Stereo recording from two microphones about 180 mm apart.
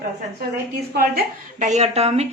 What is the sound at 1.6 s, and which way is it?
Speech, 40° right (ahead or behind).